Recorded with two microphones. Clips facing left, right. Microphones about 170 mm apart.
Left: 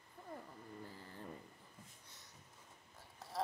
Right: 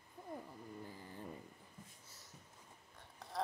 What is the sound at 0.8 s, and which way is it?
Vehicle, 15° right (ahead or behind).